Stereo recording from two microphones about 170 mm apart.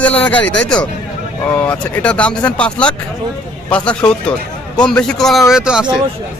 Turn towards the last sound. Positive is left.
turn(degrees=-5)  # may be behind; listen again after turning